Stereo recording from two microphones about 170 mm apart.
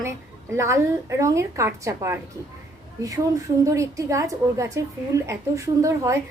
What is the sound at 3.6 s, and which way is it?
A woman's voice, 20° right (ahead or behind).